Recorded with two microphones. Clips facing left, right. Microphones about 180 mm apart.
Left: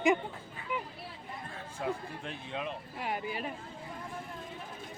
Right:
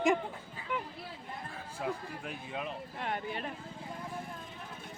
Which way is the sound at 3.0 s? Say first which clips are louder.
Left 1 dB; 5° left (ahead or behind).